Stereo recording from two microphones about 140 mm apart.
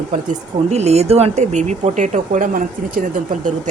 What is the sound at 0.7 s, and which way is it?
Speech, 50° right (ahead or behind).